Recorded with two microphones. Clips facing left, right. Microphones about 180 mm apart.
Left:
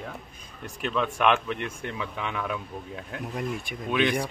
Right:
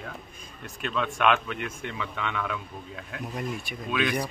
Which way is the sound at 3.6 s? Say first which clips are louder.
Left 4 dB; 20° left (ahead or behind).